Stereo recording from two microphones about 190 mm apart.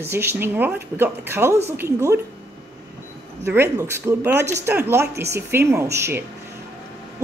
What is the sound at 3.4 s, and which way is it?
A woman's voice, 15° right (ahead or behind).